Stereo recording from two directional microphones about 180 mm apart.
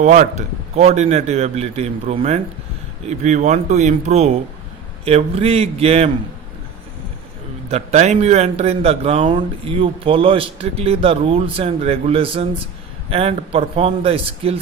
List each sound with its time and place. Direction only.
0.0 s speech: 45° right (ahead or behind)
7.7 s speech: 35° right (ahead or behind)